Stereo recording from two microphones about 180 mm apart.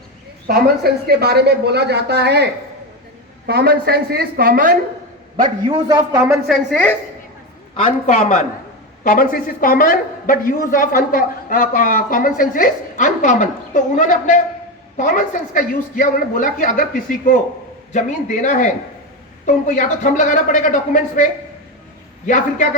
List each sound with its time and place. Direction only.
0.4 s a woman's voice: 60° right (ahead or behind)
5.4 s a man's voice: 25° right (ahead or behind)
6.3 s a woman's voice: centre (ahead or behind)
7.9 s a man's voice: 35° left (ahead or behind)
9.0 s a man's voice: 50° left (ahead or behind)
22.3 s a man's voice: 45° left (ahead or behind)